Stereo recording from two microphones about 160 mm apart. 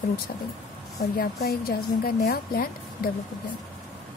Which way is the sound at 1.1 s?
75° left (ahead or behind).